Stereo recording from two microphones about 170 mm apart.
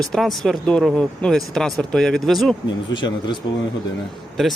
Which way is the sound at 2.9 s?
25° left (ahead or behind).